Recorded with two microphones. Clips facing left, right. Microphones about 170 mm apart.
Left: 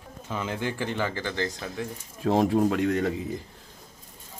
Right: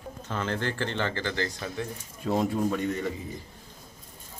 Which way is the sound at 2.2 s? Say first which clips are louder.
Left 4 dB; 90° left.